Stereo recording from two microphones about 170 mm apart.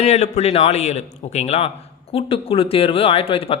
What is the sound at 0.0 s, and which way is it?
Speech, 40° left (ahead or behind).